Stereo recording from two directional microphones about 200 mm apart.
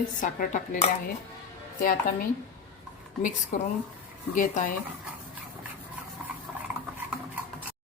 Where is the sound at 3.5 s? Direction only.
45° left (ahead or behind).